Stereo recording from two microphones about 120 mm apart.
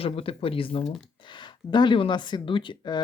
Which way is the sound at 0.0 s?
50° left (ahead or behind).